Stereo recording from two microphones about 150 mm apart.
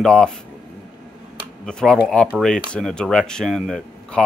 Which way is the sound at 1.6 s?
5° left (ahead or behind).